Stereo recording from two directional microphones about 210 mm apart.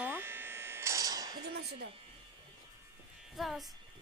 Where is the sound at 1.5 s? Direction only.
50° right (ahead or behind).